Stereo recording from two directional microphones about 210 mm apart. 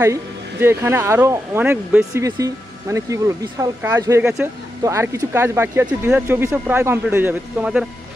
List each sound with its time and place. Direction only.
0.0 s speech: 10° right (ahead or behind)